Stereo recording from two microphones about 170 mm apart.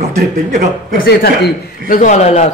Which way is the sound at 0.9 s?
70° left (ahead or behind).